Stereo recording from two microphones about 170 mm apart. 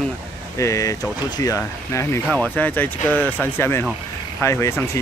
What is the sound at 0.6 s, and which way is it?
Speech, 20° left (ahead or behind).